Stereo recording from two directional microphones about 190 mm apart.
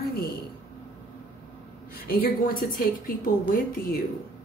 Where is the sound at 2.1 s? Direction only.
50° left (ahead or behind).